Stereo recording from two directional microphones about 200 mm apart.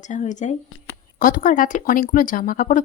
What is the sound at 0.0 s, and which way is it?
Speech, 40° left (ahead or behind).